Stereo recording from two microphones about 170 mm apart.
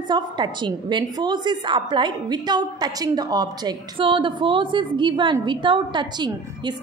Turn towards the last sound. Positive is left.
turn(degrees=-25)  # may be behind; listen again after turning